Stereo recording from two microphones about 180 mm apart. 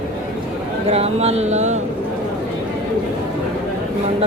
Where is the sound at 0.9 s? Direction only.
35° right (ahead or behind).